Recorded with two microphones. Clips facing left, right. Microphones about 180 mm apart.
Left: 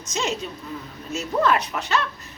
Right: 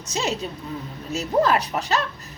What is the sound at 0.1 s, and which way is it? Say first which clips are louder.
A woman's voice: right 1 dB; 35° right (ahead or behind).